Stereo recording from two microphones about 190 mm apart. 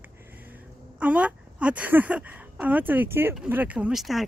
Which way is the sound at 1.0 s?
5° right (ahead or behind).